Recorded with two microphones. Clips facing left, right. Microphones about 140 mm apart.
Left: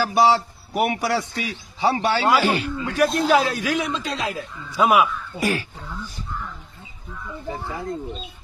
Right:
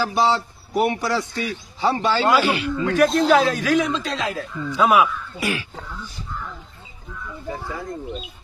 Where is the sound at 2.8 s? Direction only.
5° left (ahead or behind).